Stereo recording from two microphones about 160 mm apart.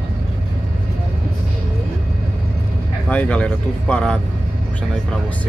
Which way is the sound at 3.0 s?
10° left (ahead or behind).